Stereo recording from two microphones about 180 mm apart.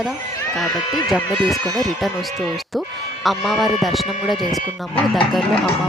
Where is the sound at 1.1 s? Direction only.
Centre (ahead or behind).